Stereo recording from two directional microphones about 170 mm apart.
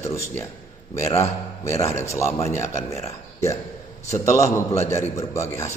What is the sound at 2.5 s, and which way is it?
Speech, 40° left (ahead or behind).